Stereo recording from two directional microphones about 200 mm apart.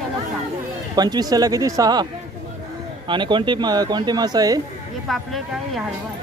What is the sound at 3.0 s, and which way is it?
Speech, 25° right (ahead or behind).